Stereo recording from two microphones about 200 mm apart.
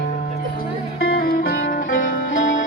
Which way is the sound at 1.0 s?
50° left (ahead or behind).